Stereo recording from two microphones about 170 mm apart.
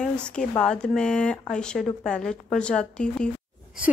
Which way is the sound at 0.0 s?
5° left (ahead or behind).